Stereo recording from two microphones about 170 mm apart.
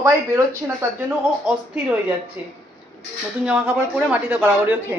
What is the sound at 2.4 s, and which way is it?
Speech, 10° right (ahead or behind).